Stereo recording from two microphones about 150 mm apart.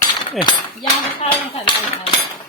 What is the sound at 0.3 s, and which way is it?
Speech, 30° left (ahead or behind).